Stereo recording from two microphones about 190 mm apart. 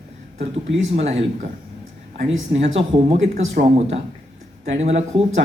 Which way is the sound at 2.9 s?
35° right (ahead or behind).